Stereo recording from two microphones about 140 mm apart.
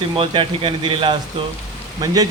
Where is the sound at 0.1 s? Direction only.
40° right (ahead or behind).